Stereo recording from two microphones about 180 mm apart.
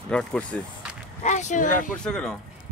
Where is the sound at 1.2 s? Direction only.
40° left (ahead or behind).